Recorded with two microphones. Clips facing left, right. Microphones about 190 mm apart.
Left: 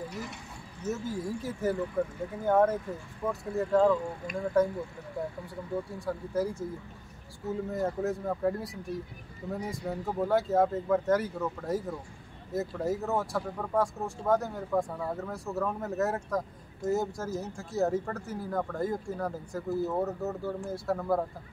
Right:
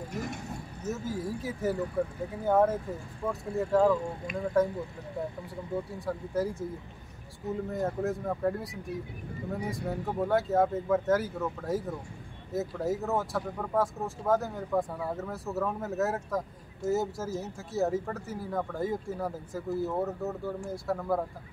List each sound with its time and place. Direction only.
0.1 s vehicle: 45° right (ahead or behind)
0.8 s speech: centre (ahead or behind)
5.9 s speech: centre (ahead or behind)
7.7 s speech: centre (ahead or behind)